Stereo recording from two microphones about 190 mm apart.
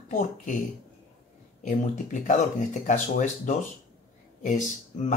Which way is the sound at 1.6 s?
40° left (ahead or behind).